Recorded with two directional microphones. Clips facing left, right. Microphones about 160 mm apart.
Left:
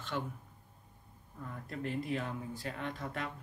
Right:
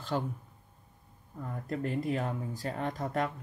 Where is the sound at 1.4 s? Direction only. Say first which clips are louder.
Right 5 dB; 40° right (ahead or behind).